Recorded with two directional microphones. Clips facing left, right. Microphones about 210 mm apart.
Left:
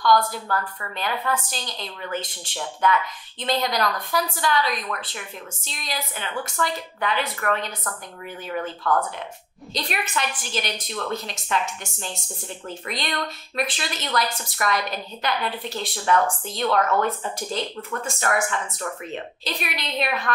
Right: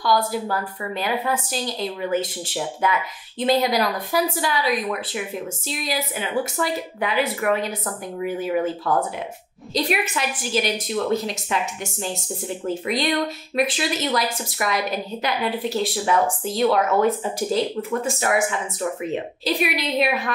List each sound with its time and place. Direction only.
0.3 s a woman's voice: 10° right (ahead or behind)